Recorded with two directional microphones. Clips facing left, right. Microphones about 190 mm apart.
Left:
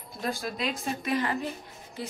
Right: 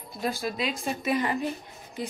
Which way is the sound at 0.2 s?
5° right (ahead or behind).